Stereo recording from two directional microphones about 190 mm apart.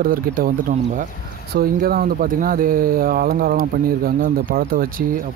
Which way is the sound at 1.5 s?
50° right (ahead or behind).